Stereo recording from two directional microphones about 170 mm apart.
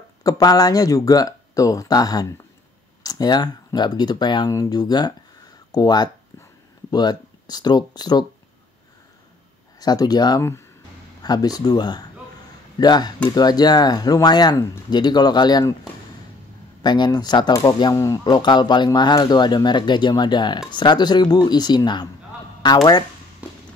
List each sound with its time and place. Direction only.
0.2 s speech: 20° left (ahead or behind)
9.8 s speech: 25° left (ahead or behind)
16.8 s speech: 25° left (ahead or behind)
23.4 s a sound: 10° right (ahead or behind)